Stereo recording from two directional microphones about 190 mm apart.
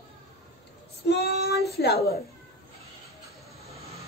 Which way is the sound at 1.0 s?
60° left (ahead or behind).